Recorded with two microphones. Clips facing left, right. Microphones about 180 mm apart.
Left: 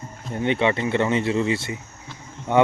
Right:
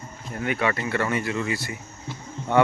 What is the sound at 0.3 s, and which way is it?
Speech, 25° left (ahead or behind).